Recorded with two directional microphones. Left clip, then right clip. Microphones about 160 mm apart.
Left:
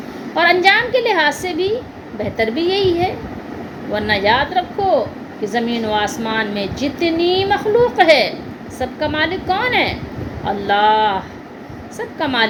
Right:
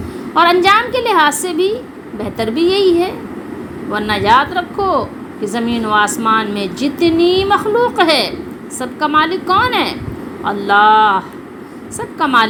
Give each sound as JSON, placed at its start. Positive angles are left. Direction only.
{"t": 0.3, "sound": "a woman's voice", "side_deg": -25}